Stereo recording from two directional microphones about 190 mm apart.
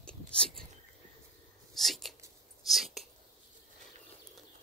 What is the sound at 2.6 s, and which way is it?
Whispering, centre (ahead or behind).